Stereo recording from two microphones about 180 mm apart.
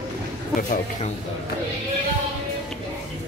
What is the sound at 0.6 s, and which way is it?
Speech, 45° left (ahead or behind).